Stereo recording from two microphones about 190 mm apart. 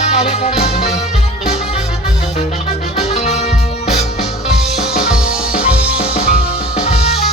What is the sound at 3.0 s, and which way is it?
Music, 35° left (ahead or behind).